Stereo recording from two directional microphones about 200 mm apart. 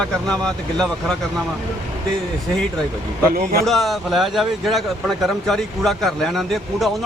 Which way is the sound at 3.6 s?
Centre (ahead or behind).